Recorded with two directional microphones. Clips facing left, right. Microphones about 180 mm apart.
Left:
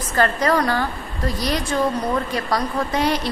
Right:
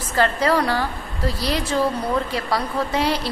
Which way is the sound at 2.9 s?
30° right (ahead or behind).